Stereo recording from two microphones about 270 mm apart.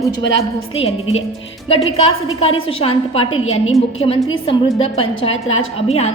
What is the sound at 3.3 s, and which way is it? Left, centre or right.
Speech, left.